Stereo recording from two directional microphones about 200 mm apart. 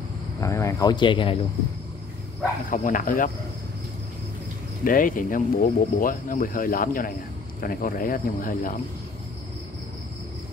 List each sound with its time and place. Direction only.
0.4 s speech: 15° left (ahead or behind)
2.7 s speech: 40° left (ahead or behind)
4.8 s speech: 45° left (ahead or behind)